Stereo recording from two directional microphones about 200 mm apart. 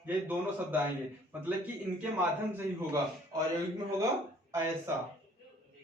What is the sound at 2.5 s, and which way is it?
A man's voice, 15° right (ahead or behind).